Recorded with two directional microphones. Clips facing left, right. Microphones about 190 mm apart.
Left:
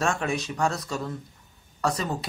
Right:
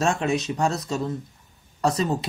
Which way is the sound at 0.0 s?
25° right (ahead or behind).